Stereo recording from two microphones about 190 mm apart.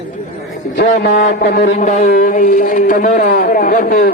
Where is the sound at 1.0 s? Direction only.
60° left (ahead or behind).